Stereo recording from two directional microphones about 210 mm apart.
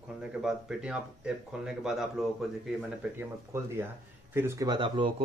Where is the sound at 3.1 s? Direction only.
10° right (ahead or behind).